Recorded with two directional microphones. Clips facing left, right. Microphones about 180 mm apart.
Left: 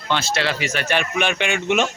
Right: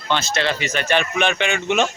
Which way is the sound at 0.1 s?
10° left (ahead or behind).